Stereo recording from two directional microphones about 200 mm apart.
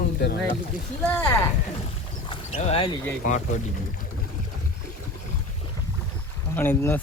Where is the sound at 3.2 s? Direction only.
40° left (ahead or behind).